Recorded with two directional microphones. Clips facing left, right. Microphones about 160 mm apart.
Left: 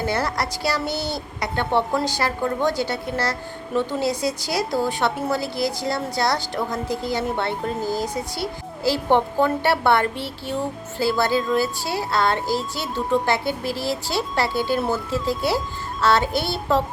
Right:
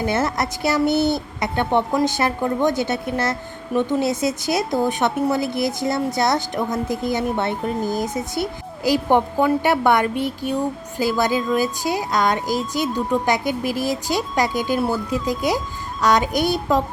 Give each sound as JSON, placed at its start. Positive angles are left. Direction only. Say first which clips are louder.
{"t": 0.0, "sound": "a woman's voice", "louder": "right 3 dB", "side_deg": -20}